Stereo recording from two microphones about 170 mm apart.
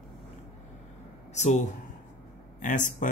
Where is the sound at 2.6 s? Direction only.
50° left (ahead or behind).